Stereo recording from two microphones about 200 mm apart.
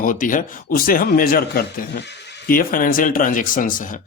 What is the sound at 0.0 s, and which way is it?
Speech, 40° left (ahead or behind).